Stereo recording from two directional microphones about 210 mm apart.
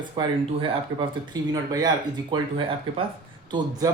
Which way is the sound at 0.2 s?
25° right (ahead or behind).